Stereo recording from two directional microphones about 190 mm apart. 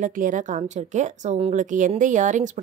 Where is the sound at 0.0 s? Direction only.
45° right (ahead or behind).